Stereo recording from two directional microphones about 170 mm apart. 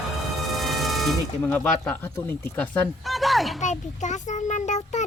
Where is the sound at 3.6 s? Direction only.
45° left (ahead or behind).